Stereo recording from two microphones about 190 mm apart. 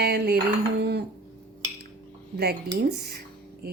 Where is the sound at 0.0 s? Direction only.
60° right (ahead or behind).